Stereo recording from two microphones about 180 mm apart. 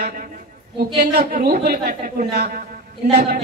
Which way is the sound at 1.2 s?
55° right (ahead or behind).